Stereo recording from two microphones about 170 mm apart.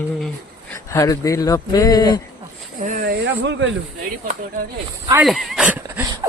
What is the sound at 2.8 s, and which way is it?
Speech, 50° right (ahead or behind).